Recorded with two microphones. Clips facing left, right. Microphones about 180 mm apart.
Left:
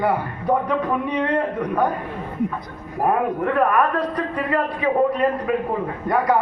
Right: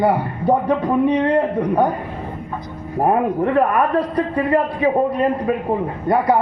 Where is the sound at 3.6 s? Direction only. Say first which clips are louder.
Right 1 dB; 30° right (ahead or behind).